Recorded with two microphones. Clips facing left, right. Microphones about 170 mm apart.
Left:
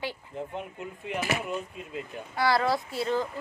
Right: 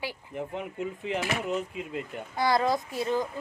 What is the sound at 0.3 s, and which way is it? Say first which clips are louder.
Speech: right 7 dB; 85° right.